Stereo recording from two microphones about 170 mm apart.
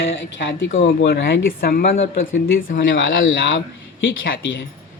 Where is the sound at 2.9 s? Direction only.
90° left.